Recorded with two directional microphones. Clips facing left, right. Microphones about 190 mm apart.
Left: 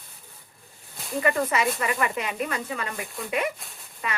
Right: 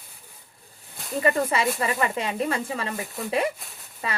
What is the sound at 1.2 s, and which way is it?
Speech, 30° right (ahead or behind).